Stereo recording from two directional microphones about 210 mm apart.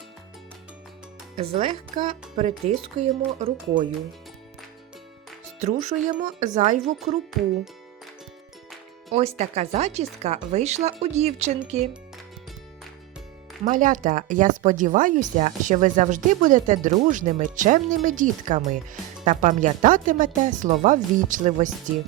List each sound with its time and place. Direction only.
1.4 s speech: 25° right (ahead or behind)
5.5 s speech: 35° right (ahead or behind)
9.1 s speech: 30° right (ahead or behind)
13.7 s speech: 40° right (ahead or behind)